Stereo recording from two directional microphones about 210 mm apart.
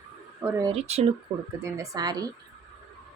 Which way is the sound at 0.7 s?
30° right (ahead or behind).